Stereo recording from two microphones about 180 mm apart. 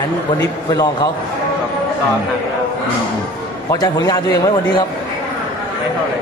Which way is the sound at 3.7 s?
20° left (ahead or behind).